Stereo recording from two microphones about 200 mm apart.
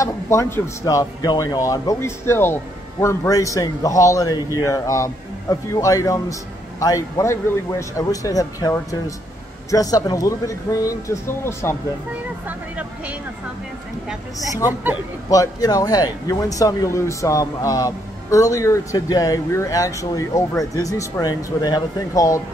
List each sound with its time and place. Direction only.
0.0 s speech: 15° left (ahead or behind)
12.4 s speech: 5° right (ahead or behind)
14.7 s speech: 10° right (ahead or behind)
15.2 s speech: 15° left (ahead or behind)